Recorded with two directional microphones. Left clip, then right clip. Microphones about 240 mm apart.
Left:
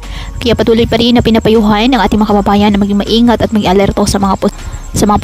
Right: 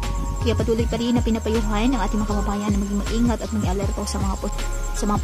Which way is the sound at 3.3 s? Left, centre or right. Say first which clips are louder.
Left 16 dB; left.